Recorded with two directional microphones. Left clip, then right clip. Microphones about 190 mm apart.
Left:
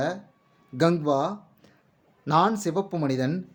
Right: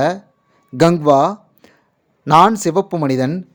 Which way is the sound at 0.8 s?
45° right (ahead or behind).